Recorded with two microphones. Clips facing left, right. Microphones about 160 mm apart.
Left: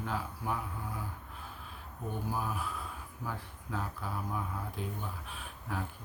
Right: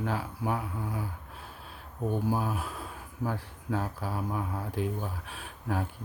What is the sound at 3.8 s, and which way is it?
Speech, 40° right (ahead or behind).